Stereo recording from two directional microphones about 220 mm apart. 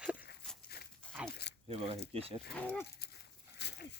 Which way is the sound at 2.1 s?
25° right (ahead or behind).